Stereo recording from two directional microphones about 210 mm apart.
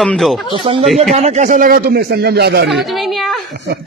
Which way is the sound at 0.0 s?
Centre (ahead or behind).